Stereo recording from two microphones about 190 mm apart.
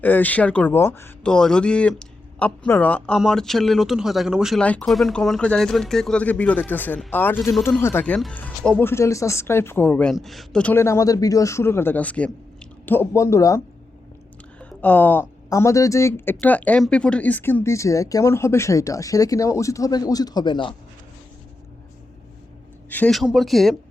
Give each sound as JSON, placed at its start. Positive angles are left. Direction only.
{"t": 0.0, "sound": "speech", "side_deg": 10}
{"t": 14.6, "sound": "speech", "side_deg": 10}
{"t": 22.9, "sound": "speech", "side_deg": 5}